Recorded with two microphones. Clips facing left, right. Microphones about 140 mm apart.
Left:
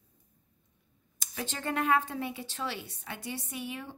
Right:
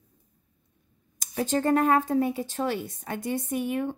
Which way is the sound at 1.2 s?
45° right (ahead or behind).